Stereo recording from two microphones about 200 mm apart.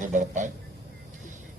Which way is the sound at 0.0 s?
40° right (ahead or behind).